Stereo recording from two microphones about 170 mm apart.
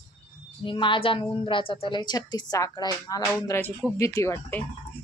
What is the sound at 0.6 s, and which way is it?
A woman's voice, 30° left (ahead or behind).